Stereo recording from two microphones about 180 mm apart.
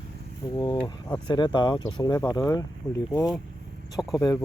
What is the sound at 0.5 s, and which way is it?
Speech, 25° left (ahead or behind).